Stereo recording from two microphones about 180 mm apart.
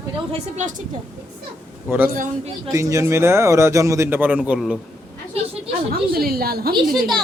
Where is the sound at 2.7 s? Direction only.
15° right (ahead or behind); by 4.8 s centre (ahead or behind).